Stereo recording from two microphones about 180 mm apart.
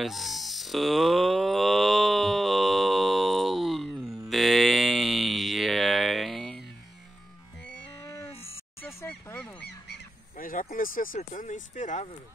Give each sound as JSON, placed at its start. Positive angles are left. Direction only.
{"t": 0.0, "sound": "music", "side_deg": 0}
{"t": 4.3, "sound": "a sound", "side_deg": 0}
{"t": 9.0, "sound": "goose", "side_deg": 10}
{"t": 9.7, "sound": "goose", "side_deg": 60}